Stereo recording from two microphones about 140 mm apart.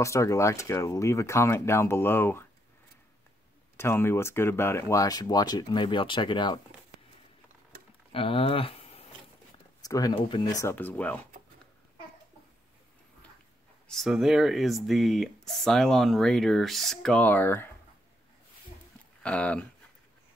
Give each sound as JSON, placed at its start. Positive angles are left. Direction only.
{"t": 0.0, "sound": "speech", "side_deg": 20}
{"t": 3.7, "sound": "speech", "side_deg": 15}
{"t": 8.1, "sound": "speech", "side_deg": 40}
{"t": 9.8, "sound": "speech", "side_deg": 25}
{"t": 10.6, "sound": "speech", "side_deg": 15}
{"t": 13.8, "sound": "speech", "side_deg": 0}
{"t": 19.2, "sound": "speech", "side_deg": 10}